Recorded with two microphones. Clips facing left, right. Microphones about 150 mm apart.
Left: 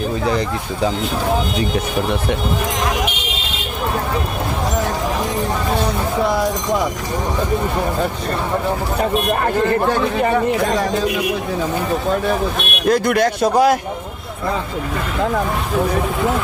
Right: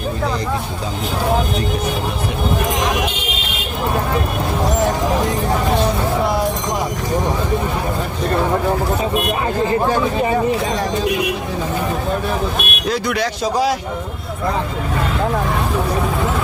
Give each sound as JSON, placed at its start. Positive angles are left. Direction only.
{"t": 9.3, "sound": "speech", "side_deg": 60}
{"t": 12.9, "sound": "a man's voice", "side_deg": 50}